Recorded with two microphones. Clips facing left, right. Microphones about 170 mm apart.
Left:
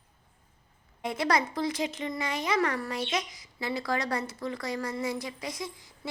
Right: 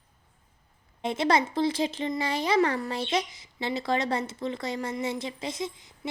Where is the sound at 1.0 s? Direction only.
25° right (ahead or behind).